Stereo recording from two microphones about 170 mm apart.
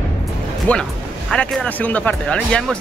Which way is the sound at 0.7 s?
10° left (ahead or behind).